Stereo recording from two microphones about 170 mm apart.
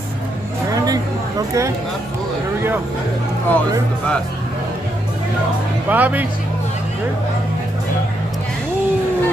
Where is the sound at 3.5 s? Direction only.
10° left (ahead or behind).